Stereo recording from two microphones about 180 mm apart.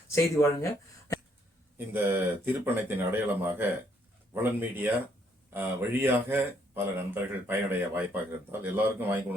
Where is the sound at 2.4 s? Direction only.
10° right (ahead or behind).